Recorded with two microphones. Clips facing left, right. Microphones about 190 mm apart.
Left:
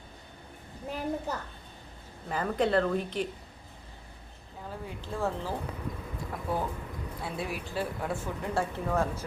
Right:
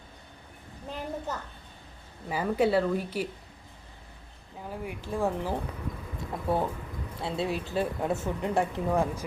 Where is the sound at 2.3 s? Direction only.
10° right (ahead or behind).